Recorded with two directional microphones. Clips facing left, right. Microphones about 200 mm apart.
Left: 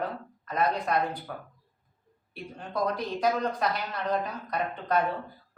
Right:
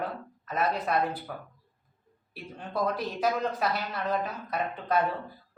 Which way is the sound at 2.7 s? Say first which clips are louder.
Even; 5° right (ahead or behind).